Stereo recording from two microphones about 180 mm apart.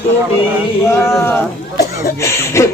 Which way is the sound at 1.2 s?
10° left (ahead or behind).